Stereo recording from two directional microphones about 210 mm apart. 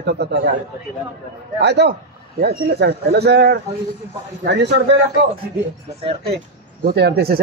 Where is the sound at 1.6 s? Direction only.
55° right (ahead or behind).